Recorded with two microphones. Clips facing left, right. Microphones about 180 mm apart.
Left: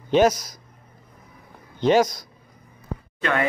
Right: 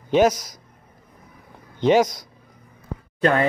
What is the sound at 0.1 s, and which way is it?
Speech, 15° right (ahead or behind).